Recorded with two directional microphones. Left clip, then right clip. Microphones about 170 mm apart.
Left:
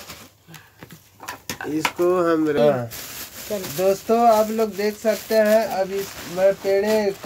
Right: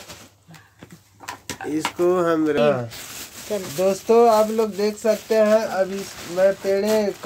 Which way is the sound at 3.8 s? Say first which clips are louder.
Right 1 dB; 25° right (ahead or behind).